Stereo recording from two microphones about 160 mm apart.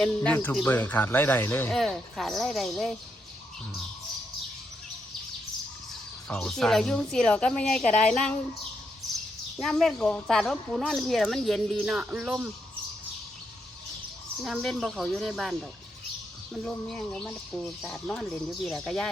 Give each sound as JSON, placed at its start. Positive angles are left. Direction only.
{"t": 0.0, "sound": "speech", "side_deg": 5}
{"t": 1.7, "sound": "speech", "side_deg": 0}
{"t": 5.9, "sound": "speech", "side_deg": 5}
{"t": 9.6, "sound": "speech", "side_deg": 0}
{"t": 14.4, "sound": "speech", "side_deg": 0}
{"t": 16.6, "sound": "speech", "side_deg": 5}